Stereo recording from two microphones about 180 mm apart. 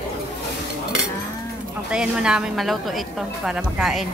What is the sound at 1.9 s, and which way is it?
A woman's voice, 5° right (ahead or behind).